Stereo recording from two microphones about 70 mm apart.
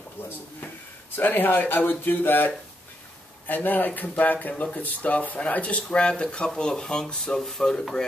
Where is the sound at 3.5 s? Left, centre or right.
Left; by 8.0 s centre.